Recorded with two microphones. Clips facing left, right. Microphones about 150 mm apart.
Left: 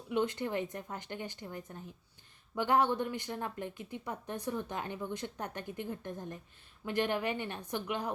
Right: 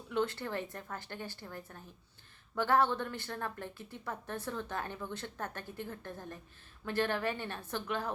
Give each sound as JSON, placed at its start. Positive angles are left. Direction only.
{"t": 0.1, "sound": "speech", "side_deg": 15}